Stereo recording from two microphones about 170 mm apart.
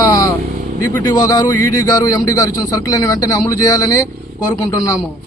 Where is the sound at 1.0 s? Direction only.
20° left (ahead or behind).